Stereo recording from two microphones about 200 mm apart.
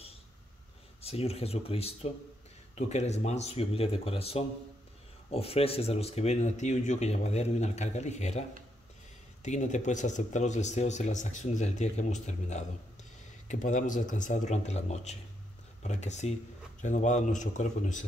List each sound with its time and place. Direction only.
1.0 s speech: 30° left (ahead or behind)